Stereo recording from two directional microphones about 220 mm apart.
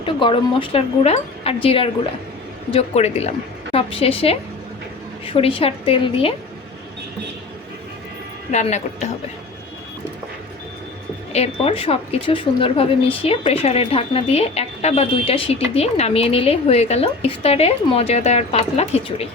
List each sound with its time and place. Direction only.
0.0 s a woman's voice: 25° left (ahead or behind)
8.4 s a woman's voice: 30° left (ahead or behind)
11.3 s a woman's voice: 30° left (ahead or behind)